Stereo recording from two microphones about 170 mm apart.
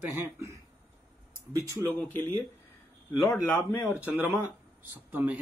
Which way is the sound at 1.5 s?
20° right (ahead or behind).